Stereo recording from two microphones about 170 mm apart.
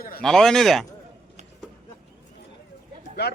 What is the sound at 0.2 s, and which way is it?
Speech, 5° left (ahead or behind).